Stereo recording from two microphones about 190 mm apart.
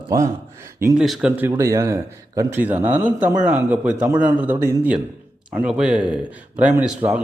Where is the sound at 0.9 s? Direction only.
5° right (ahead or behind).